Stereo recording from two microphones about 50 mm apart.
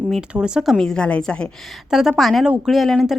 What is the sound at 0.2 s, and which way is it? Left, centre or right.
Speech, centre.